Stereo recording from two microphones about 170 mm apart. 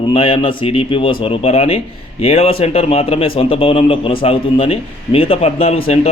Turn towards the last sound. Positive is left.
turn(degrees=35)  # may be behind; listen again after turning